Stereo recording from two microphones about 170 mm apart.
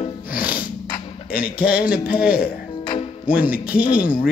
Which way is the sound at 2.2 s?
65° left (ahead or behind).